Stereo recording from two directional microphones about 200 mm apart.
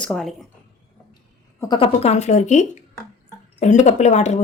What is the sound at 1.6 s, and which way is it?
Speech, 25° left (ahead or behind).